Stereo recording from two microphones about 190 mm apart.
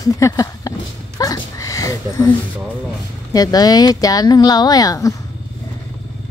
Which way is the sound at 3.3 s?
20° left (ahead or behind).